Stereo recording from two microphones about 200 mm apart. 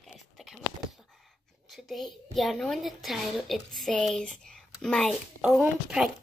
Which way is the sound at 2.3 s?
Centre (ahead or behind).